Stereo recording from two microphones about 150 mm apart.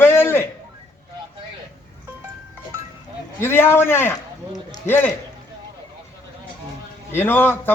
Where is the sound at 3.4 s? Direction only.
15° left (ahead or behind).